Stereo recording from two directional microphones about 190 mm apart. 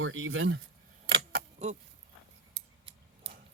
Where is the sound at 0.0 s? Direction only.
90° right.